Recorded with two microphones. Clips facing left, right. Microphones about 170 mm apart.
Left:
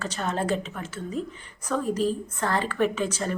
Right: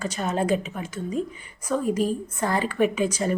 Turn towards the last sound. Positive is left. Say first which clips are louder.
# right 3 dB
turn(degrees=-10)  # may be behind; listen again after turning